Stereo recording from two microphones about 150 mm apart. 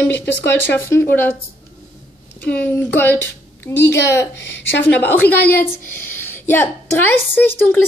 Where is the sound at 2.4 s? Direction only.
10° left (ahead or behind).